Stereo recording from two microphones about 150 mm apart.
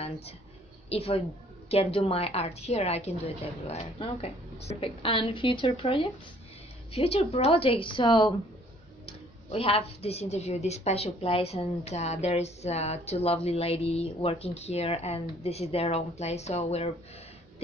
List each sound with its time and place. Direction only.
0.8 s a woman's voice: 40° left (ahead or behind)